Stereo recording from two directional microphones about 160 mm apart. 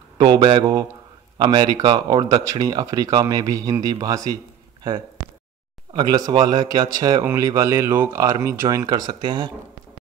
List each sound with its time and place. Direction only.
0.2 s speech: 30° right (ahead or behind)
5.9 s speech: 25° right (ahead or behind)